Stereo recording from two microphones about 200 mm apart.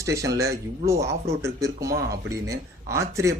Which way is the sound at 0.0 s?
15° right (ahead or behind).